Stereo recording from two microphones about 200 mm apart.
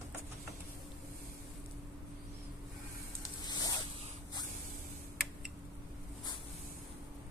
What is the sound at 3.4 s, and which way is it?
Vehicle, 20° left (ahead or behind).